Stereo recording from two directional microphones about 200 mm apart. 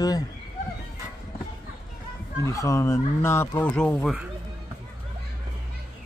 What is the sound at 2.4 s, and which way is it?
Speech, 15° left (ahead or behind).